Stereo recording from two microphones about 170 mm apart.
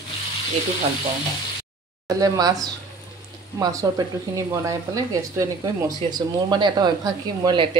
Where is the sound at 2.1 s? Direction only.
20° right (ahead or behind).